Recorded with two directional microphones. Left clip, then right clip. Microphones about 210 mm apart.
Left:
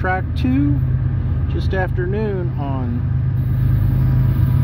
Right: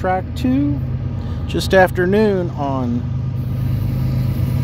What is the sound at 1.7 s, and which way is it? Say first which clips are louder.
Speech: right 11 dB; 35° right (ahead or behind).